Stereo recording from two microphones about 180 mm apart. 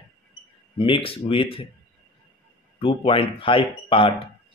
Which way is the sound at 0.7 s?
30° left (ahead or behind).